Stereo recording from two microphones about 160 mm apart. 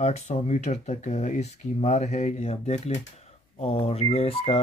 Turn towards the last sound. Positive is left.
turn(degrees=35)  # may be behind; listen again after turning